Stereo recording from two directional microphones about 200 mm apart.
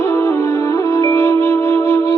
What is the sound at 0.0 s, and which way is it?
Music, 15° left (ahead or behind).